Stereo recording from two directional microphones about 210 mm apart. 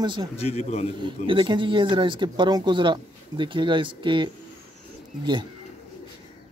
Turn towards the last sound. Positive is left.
turn(degrees=-20)  # may be behind; listen again after turning